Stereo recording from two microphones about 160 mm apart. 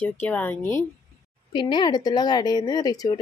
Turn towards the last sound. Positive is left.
turn(degrees=25)  # may be behind; listen again after turning